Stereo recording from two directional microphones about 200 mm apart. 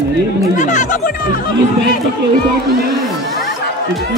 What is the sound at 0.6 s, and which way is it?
Chatter, 35° left (ahead or behind).